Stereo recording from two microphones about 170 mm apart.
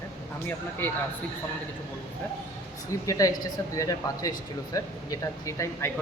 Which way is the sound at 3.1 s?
20° left (ahead or behind).